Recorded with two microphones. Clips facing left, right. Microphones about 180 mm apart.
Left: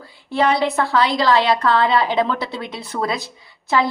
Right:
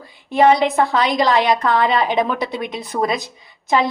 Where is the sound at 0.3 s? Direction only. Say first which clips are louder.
Right 4 dB; 20° right (ahead or behind).